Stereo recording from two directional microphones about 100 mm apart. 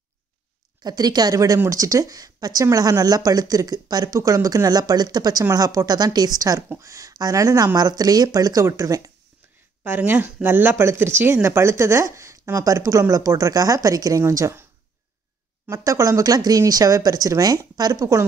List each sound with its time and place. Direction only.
0.8 s speech: 40° right (ahead or behind)
9.8 s speech: 20° right (ahead or behind)
15.7 s speech: 35° right (ahead or behind)